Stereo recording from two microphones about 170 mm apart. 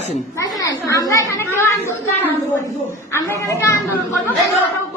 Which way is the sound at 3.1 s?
15° left (ahead or behind).